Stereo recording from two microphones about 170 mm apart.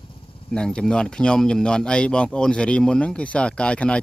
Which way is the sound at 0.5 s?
5° left (ahead or behind).